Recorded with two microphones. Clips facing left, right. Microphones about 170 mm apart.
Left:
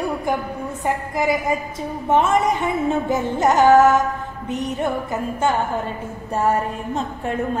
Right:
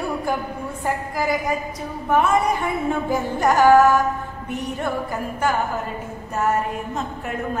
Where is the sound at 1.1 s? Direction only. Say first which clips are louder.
Left 3 dB; 25° left (ahead or behind).